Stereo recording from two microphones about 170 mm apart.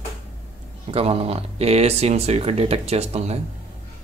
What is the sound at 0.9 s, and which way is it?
Speech, 35° right (ahead or behind).